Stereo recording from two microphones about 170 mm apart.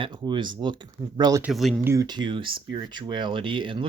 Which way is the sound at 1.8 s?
15° right (ahead or behind).